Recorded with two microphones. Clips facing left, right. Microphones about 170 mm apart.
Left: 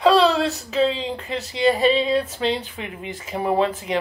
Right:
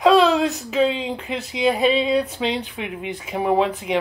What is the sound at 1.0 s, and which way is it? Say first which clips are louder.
Speech: right 1 dB; centre (ahead or behind).